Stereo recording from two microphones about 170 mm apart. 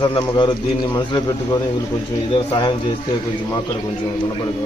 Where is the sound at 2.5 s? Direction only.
25° left (ahead or behind).